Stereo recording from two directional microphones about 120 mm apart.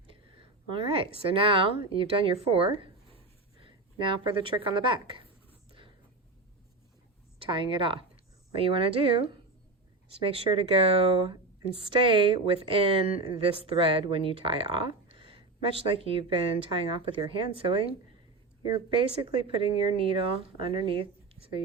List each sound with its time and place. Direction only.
0.7 s a woman's voice: 50° right (ahead or behind)
7.3 s a woman's voice: 45° right (ahead or behind)
19.2 s a woman's voice: 50° right (ahead or behind)